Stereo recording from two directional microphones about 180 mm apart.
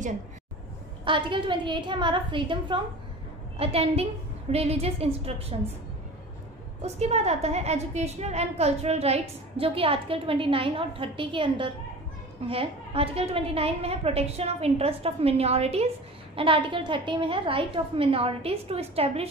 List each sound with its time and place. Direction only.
1.0 s a woman's voice: 25° right (ahead or behind)
6.8 s a woman's voice: 35° right (ahead or behind)